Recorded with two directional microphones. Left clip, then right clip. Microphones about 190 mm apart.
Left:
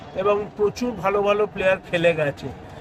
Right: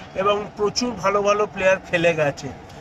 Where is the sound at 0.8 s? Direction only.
5° left (ahead or behind).